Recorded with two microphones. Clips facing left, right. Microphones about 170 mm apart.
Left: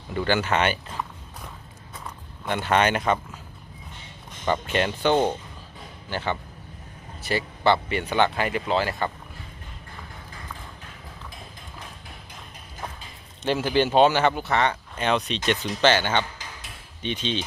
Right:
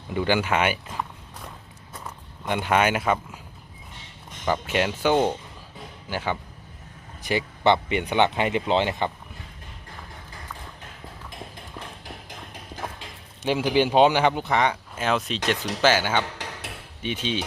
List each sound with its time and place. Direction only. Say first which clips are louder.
0.1 s speech: right 1 dB; 10° right (ahead or behind)
2.4 s speech: even; 15° right (ahead or behind)
4.4 s speech: even; 5° right (ahead or behind)
13.4 s speech: right 1 dB; 10° right (ahead or behind)
16.2 s a sound: right 5 dB; 70° right (ahead or behind)
17.0 s speech: even; 10° right (ahead or behind)